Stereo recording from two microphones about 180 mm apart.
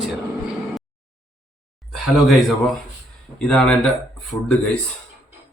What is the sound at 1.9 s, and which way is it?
A man's voice, centre (ahead or behind).